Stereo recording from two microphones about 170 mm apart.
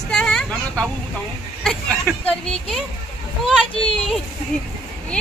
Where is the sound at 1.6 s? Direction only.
5° left (ahead or behind).